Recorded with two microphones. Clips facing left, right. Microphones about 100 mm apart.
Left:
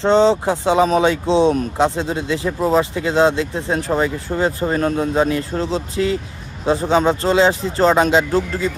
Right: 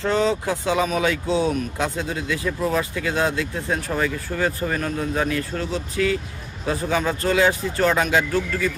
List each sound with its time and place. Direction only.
0.0 s speech: 30° left (ahead or behind)